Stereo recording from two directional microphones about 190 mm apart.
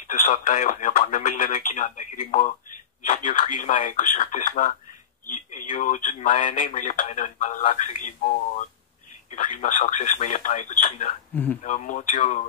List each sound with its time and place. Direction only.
0.0 s speech: 40° left (ahead or behind)